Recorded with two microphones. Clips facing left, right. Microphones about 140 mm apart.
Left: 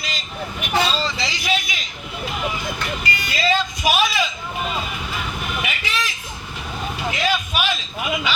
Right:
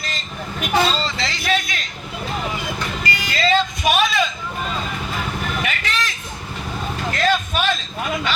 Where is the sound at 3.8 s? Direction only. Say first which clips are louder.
Right 2 dB; centre (ahead or behind).